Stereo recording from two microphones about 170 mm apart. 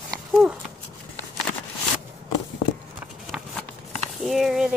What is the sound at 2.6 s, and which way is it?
Walk, 60° left (ahead or behind).